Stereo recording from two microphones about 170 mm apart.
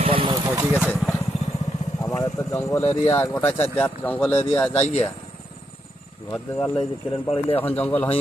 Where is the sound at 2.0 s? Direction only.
20° left (ahead or behind).